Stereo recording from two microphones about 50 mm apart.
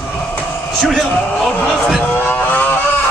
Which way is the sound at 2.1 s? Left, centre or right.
Left.